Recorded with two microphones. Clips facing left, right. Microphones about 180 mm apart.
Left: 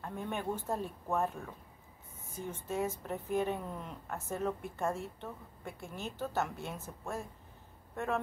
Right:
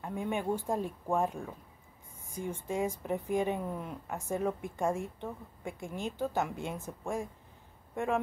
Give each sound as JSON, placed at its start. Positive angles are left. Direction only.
{"t": 0.0, "sound": "a woman's voice", "side_deg": -10}